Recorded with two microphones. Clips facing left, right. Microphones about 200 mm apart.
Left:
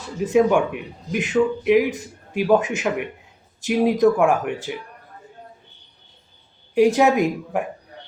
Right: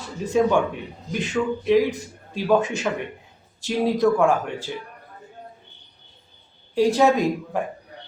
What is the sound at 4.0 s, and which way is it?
Speech, 15° left (ahead or behind).